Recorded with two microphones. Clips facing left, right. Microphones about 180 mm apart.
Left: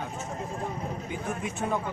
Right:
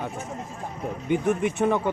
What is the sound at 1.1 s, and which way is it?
Speech, 70° right (ahead or behind).